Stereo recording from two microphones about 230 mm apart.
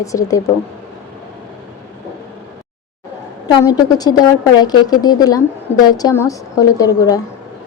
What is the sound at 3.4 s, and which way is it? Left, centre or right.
A woman's voice, centre.